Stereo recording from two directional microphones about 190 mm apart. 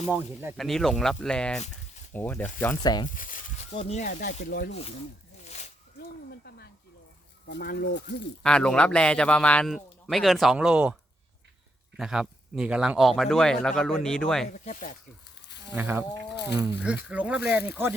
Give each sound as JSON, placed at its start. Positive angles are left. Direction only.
{"t": 0.0, "sound": "speech", "side_deg": -5}
{"t": 2.8, "sound": "speech", "side_deg": 20}
{"t": 3.2, "sound": "a sound", "side_deg": 45}
{"t": 3.7, "sound": "speech", "side_deg": 35}
{"t": 4.7, "sound": "speech", "side_deg": 35}
{"t": 5.5, "sound": "zipper", "side_deg": 40}
{"t": 7.4, "sound": "speech", "side_deg": 60}
{"t": 8.4, "sound": "speech", "side_deg": 5}
{"t": 11.9, "sound": "speech", "side_deg": 0}
{"t": 14.4, "sound": "speech", "side_deg": 40}
{"t": 15.4, "sound": "a sound", "side_deg": 65}
{"t": 15.7, "sound": "speech", "side_deg": -10}
{"t": 16.3, "sound": "speech", "side_deg": 60}
{"t": 16.6, "sound": "speech", "side_deg": -10}